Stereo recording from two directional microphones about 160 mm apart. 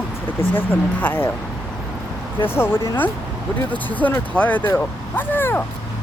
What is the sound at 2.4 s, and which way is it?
Speech, 15° left (ahead or behind).